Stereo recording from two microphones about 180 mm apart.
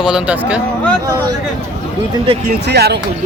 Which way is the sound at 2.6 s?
70° right (ahead or behind).